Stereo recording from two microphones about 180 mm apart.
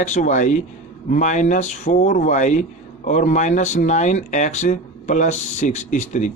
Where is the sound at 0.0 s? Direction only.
40° left (ahead or behind).